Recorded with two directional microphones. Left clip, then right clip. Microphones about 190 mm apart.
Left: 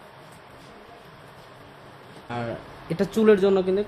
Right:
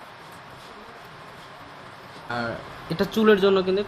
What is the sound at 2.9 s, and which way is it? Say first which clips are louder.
Speech: even; 20° left (ahead or behind).